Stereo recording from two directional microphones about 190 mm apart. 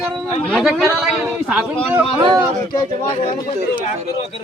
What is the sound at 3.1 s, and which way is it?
Speech, 30° left (ahead or behind).